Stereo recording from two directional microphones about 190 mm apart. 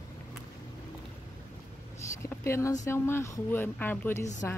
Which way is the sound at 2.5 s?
15° left (ahead or behind).